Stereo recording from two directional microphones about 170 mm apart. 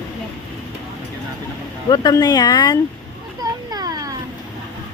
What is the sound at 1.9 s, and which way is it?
Speech, 25° left (ahead or behind).